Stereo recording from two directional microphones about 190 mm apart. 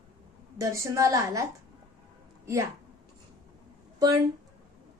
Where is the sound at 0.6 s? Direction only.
15° right (ahead or behind).